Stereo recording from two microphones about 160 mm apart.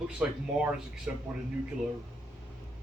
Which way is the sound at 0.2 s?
5° right (ahead or behind).